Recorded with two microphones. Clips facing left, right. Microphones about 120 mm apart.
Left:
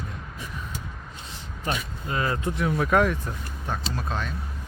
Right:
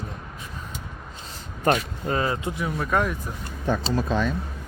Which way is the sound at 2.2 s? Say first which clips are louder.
Right 1 dB; 20° right (ahead or behind).